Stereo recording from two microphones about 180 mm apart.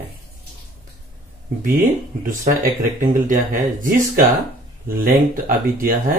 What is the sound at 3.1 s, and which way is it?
Speech, 45° right (ahead or behind).